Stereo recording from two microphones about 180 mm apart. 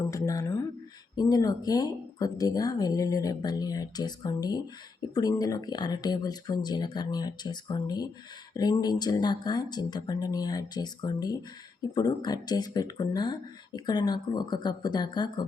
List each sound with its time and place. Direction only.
0.0 s speech: 20° left (ahead or behind)